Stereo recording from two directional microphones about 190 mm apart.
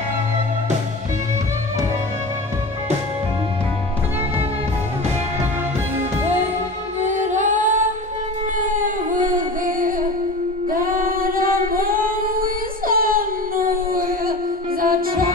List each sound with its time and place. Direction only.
7.0 s singing: 40° right (ahead or behind)
8.5 s music: 45° right (ahead or behind)
10.7 s singing: 45° right (ahead or behind)
12.8 s a sound: 50° right (ahead or behind)
14.8 s music: 50° right (ahead or behind)